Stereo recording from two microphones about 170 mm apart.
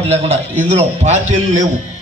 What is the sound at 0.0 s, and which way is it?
A man's voice, 35° right (ahead or behind).